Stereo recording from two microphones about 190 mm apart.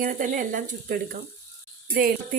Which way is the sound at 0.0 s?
45° right (ahead or behind).